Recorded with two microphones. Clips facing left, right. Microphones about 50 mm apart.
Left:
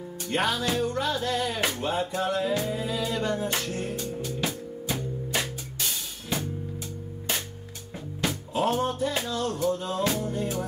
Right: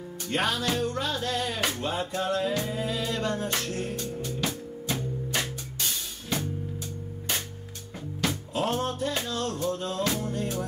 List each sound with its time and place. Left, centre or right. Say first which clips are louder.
0.3 s music: left 1 dB; left
8.6 s music: left 3 dB; centre